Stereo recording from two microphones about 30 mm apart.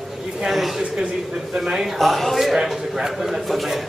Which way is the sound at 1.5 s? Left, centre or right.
Right.